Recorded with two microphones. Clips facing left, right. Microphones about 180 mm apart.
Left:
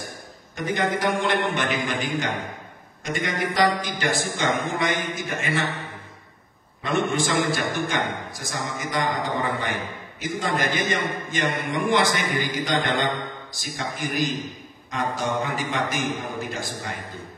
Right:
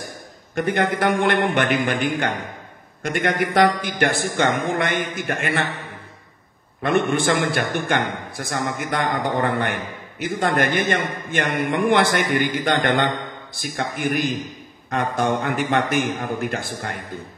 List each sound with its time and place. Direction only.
0.6 s a man's voice: 60° right (ahead or behind)
6.8 s a man's voice: 60° right (ahead or behind)